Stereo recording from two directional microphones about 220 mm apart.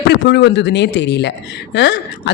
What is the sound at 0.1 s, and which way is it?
A woman's voice, 50° left (ahead or behind).